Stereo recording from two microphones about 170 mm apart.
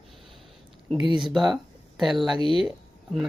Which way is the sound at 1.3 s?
Centre (ahead or behind).